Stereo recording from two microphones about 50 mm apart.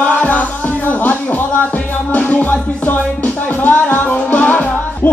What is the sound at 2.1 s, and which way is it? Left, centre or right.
Music, left.